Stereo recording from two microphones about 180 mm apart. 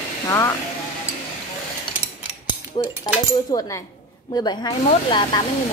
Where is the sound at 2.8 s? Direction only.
30° left (ahead or behind).